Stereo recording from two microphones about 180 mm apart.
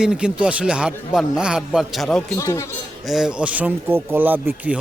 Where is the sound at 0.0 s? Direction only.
5° right (ahead or behind).